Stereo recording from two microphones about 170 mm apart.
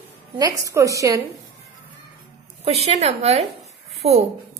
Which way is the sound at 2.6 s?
40° right (ahead or behind).